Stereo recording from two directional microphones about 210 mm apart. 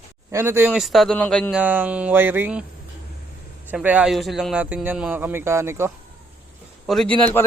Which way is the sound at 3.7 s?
5° right (ahead or behind).